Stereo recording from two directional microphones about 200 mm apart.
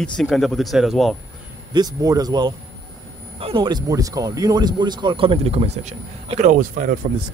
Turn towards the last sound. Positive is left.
turn(degrees=-40)  # may be behind; listen again after turning